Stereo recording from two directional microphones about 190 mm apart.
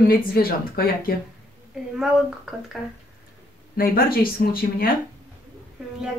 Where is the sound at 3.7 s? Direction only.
50° left (ahead or behind).